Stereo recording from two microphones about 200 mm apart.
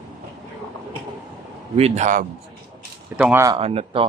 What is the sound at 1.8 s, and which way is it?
Speech, 35° right (ahead or behind).